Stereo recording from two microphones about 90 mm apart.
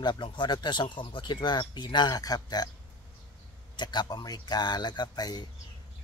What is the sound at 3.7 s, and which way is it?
Speech, 55° left (ahead or behind).